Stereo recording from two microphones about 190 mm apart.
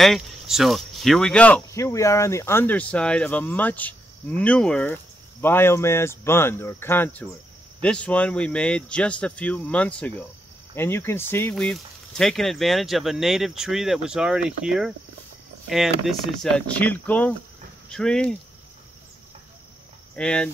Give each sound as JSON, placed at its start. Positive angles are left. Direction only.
{"t": 0.0, "sound": "speech", "side_deg": 0}
{"t": 20.2, "sound": "speech", "side_deg": 5}